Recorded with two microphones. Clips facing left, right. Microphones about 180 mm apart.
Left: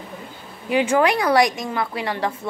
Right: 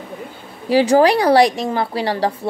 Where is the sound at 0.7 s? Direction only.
35° right (ahead or behind).